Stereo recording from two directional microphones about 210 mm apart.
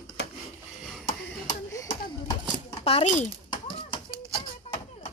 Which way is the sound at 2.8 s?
30° left (ahead or behind).